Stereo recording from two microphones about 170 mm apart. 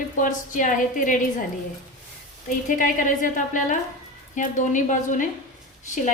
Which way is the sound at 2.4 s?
50° left (ahead or behind).